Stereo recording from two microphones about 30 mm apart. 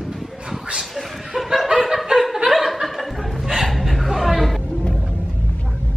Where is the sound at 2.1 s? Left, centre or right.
Centre.